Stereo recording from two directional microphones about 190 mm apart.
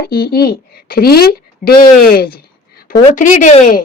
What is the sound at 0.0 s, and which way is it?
Speech, 55° left (ahead or behind).